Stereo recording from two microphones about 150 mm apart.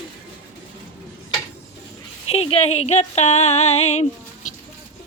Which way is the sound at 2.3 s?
40° left (ahead or behind).